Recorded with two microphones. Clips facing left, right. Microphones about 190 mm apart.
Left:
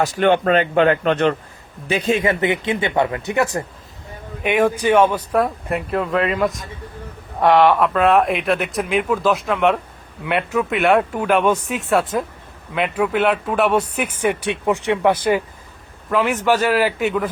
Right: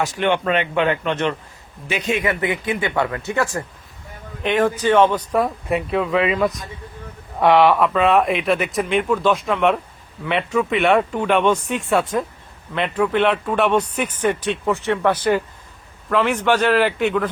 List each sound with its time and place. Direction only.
0.0 s a man's voice: 40° left (ahead or behind); by 17.2 s 5° left (ahead or behind)